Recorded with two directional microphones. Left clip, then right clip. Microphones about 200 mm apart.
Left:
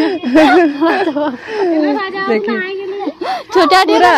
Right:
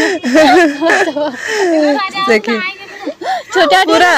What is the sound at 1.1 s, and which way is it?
Speech, 45° left (ahead or behind).